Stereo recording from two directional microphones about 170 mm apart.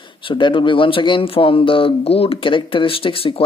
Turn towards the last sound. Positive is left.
turn(degrees=35)  # may be behind; listen again after turning